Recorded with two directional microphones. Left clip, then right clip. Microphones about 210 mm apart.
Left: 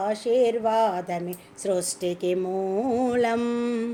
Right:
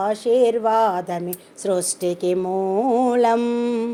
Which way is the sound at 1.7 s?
15° right (ahead or behind).